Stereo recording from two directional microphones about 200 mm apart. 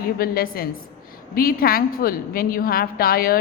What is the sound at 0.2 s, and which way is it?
A woman's voice, 50° left (ahead or behind).